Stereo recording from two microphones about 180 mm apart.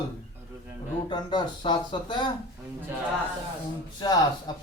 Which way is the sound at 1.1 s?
25° left (ahead or behind).